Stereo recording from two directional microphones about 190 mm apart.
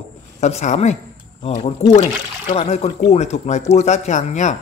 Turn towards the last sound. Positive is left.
turn(degrees=35)  # may be behind; listen again after turning